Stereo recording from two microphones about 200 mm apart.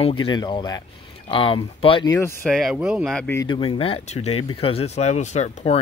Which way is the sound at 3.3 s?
25° left (ahead or behind).